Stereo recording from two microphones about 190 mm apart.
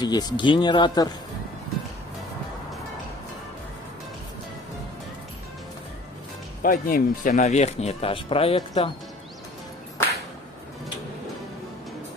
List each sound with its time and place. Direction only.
0.0 s speech: 20° left (ahead or behind)
6.6 s speech: 50° left (ahead or behind); by 8.9 s 30° left (ahead or behind)